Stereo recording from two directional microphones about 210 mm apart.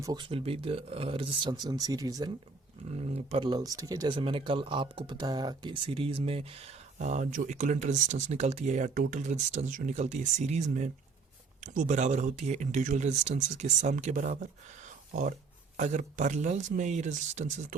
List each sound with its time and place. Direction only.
0.0 s speech: 20° right (ahead or behind)
2.9 s speech: 30° right (ahead or behind)
14.8 s a sound: 35° right (ahead or behind)
15.8 s speech: 35° right (ahead or behind)